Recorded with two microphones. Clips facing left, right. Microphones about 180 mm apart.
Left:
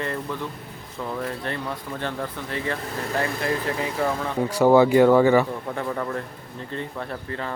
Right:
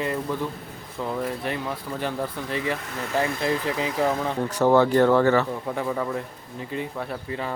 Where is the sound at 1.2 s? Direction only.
10° right (ahead or behind).